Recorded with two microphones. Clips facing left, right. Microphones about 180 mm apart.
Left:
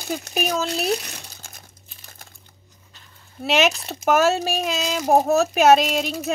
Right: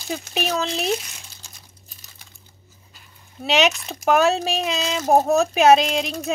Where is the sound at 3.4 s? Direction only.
Centre (ahead or behind).